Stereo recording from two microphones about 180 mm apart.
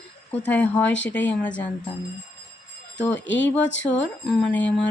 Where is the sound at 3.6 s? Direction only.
90° left.